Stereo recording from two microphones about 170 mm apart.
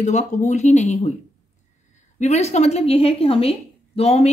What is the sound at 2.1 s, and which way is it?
A woman's voice, 40° left (ahead or behind).